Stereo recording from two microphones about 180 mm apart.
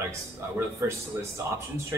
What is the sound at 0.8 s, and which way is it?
Speech, 15° right (ahead or behind).